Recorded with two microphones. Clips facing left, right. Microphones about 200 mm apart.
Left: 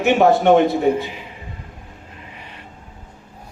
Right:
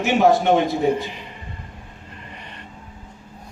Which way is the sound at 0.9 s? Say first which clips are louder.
Left 1 dB; 5° left (ahead or behind).